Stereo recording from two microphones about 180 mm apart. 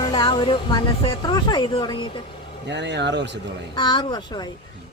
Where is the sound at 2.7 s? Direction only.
75° right (ahead or behind).